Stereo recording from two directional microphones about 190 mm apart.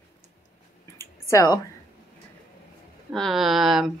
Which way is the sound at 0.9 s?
15° left (ahead or behind).